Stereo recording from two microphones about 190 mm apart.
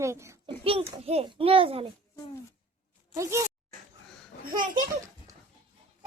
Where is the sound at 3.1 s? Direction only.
15° right (ahead or behind).